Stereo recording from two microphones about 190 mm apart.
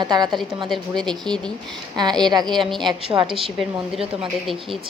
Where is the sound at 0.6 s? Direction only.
Centre (ahead or behind).